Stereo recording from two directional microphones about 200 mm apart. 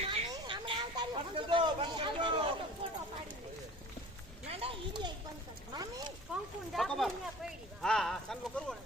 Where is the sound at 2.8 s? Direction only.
25° right (ahead or behind).